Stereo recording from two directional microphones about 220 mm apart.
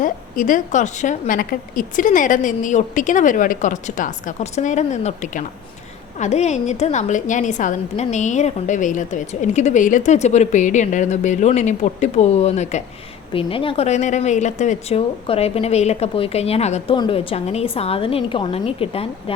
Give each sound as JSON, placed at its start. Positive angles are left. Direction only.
{"t": 0.0, "sound": "a woman's voice", "side_deg": 35}